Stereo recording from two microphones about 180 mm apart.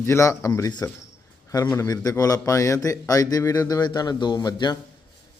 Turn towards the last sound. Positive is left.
turn(degrees=25)  # may be behind; listen again after turning